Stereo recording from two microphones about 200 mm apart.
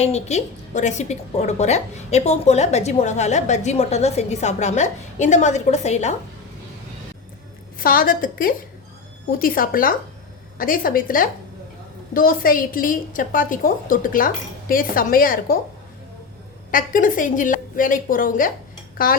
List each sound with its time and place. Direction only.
0.0 s a woman's voice: 35° left (ahead or behind)
7.8 s a woman's voice: 45° left (ahead or behind)
16.7 s a woman's voice: 45° left (ahead or behind)